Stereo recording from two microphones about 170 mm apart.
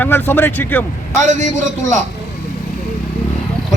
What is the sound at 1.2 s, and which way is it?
Speech, 45° right (ahead or behind).